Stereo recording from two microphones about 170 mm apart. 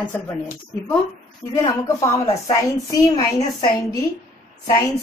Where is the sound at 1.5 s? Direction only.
20° left (ahead or behind).